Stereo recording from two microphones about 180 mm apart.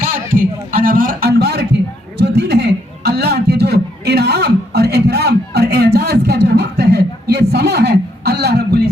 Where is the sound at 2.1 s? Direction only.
70° right (ahead or behind).